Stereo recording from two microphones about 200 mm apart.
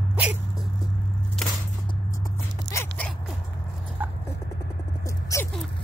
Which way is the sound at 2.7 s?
10° left (ahead or behind).